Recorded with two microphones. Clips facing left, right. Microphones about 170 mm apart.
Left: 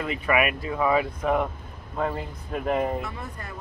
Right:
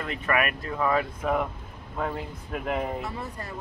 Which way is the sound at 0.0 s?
5° left (ahead or behind).